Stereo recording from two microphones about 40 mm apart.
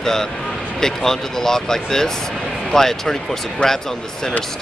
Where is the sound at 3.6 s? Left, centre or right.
Left.